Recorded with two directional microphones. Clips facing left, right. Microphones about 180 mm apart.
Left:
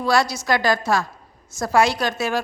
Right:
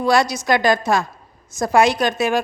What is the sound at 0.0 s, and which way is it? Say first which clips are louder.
A woman's voice: right 3 dB; 20° right (ahead or behind).